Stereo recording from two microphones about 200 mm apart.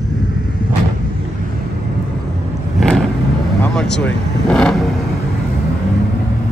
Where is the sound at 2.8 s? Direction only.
5° left (ahead or behind).